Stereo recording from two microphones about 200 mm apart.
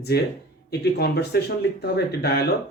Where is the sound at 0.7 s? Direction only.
55° left (ahead or behind).